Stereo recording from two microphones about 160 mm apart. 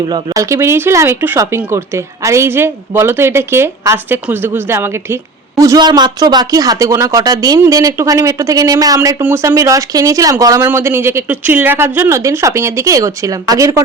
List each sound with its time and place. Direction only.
0.0 s speech: 25° right (ahead or behind)